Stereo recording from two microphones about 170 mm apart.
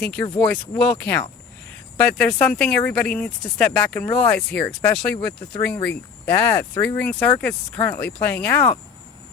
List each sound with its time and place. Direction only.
0.0 s speech: 10° left (ahead or behind)